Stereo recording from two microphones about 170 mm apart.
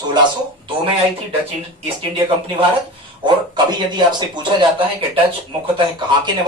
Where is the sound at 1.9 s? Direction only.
30° right (ahead or behind).